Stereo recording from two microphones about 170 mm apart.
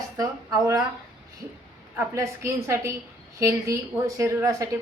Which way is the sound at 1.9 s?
15° right (ahead or behind).